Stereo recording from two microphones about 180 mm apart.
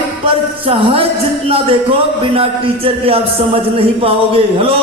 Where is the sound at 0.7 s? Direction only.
30° right (ahead or behind).